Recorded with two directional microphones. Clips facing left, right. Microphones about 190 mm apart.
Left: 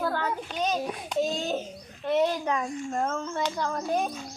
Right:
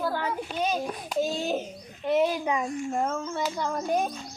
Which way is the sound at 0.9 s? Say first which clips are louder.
Even; 5° right (ahead or behind).